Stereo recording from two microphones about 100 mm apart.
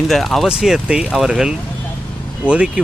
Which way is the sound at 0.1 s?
Centre (ahead or behind).